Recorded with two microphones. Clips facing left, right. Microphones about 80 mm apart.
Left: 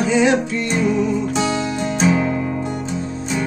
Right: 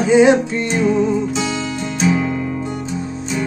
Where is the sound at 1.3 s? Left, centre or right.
Left.